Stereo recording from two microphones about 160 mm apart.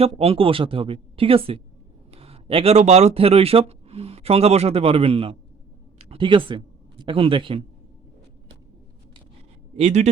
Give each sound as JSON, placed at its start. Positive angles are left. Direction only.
{"t": 0.0, "sound": "speech", "side_deg": -35}
{"t": 9.7, "sound": "a man's voice", "side_deg": -45}